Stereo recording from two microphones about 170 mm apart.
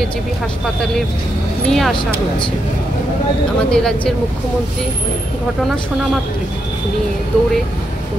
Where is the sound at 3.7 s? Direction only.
5° left (ahead or behind).